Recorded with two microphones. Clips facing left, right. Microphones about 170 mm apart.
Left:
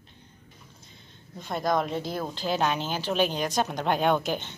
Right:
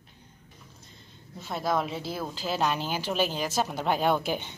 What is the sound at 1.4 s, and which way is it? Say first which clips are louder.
A woman's voice: left 2 dB; 5° right (ahead or behind).